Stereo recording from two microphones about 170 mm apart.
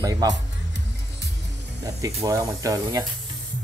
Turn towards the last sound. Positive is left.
turn(degrees=-20)  # may be behind; listen again after turning